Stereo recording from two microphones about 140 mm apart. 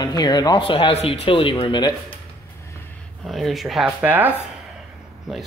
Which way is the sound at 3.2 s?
Centre (ahead or behind).